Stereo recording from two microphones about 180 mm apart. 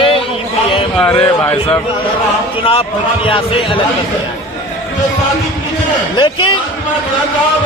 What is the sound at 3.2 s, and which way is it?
Speech, 30° left (ahead or behind).